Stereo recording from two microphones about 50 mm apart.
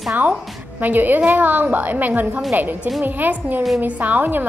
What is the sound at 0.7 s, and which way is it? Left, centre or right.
A woman's voice, right.